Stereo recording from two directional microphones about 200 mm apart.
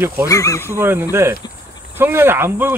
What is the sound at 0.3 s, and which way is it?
Speech, 15° left (ahead or behind).